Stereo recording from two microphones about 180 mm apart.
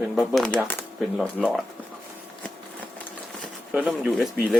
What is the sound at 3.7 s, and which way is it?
Speech, 5° right (ahead or behind).